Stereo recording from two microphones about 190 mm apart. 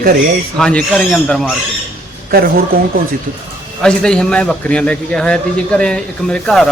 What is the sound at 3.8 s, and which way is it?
A man's voice, 5° left (ahead or behind).